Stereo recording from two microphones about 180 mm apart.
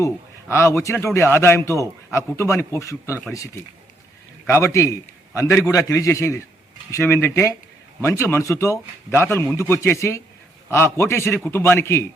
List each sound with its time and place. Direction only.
0.0 s a man's voice: 15° left (ahead or behind)